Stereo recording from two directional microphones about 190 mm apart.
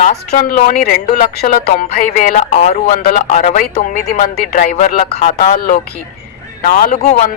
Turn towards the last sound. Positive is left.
turn(degrees=40)  # may be behind; listen again after turning